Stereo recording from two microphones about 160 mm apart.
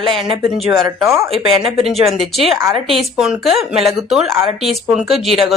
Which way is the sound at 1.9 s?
Centre (ahead or behind).